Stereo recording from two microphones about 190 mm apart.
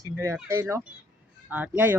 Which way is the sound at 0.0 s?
15° right (ahead or behind).